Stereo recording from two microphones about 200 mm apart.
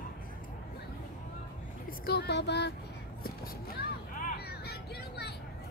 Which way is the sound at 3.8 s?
45° left (ahead or behind).